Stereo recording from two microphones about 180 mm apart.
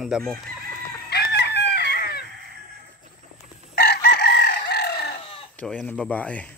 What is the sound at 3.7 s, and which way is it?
Chicken, 65° left (ahead or behind).